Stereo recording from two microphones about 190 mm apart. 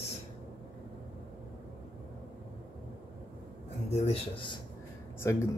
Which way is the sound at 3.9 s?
35° left (ahead or behind).